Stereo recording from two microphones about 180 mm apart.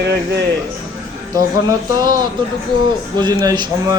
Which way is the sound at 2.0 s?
20° right (ahead or behind).